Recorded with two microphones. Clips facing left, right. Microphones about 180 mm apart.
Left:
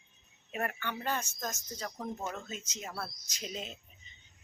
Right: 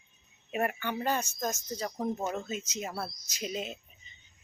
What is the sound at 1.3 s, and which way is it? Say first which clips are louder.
Speech: right 6 dB; 25° right (ahead or behind).